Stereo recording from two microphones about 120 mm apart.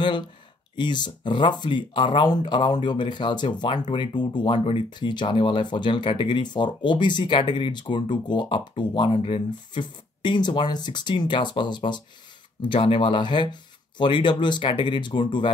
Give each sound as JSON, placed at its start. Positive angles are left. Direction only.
{"t": 0.7, "sound": "speech", "side_deg": 40}